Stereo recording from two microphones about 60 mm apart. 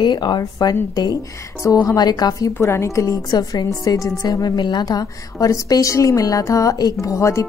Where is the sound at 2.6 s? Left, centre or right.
Left.